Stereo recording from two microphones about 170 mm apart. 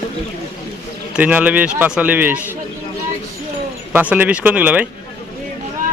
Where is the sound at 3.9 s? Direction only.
10° right (ahead or behind).